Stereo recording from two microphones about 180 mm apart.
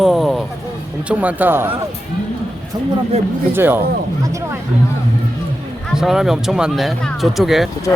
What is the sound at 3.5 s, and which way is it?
Speech, 10° right (ahead or behind).